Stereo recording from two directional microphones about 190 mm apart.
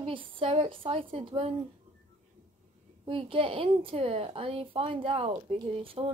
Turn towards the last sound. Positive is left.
turn(degrees=-30)  # may be behind; listen again after turning